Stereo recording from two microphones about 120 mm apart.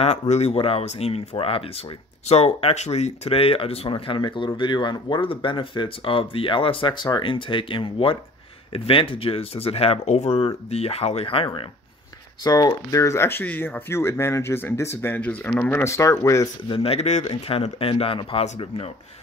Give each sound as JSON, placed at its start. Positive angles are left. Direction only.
{"t": 0.0, "sound": "speech", "side_deg": 60}
{"t": 12.4, "sound": "speech", "side_deg": 30}
{"t": 16.6, "sound": "speech", "side_deg": 50}